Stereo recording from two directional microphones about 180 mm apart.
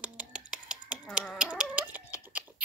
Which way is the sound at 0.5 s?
5° right (ahead or behind).